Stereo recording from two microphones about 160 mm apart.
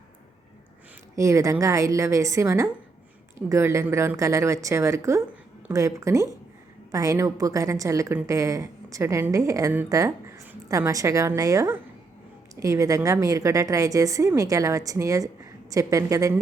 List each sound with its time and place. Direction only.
1.1 s a woman's voice: 20° right (ahead or behind)